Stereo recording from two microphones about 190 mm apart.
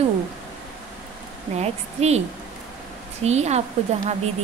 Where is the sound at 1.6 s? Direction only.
35° right (ahead or behind).